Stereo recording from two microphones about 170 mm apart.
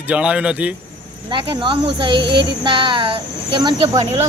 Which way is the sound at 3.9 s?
40° right (ahead or behind).